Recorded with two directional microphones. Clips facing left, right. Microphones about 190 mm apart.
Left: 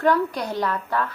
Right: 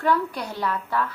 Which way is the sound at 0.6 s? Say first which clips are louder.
Left 1 dB; 40° left (ahead or behind).